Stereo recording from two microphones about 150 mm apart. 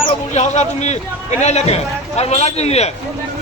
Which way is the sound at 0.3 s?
50° left (ahead or behind).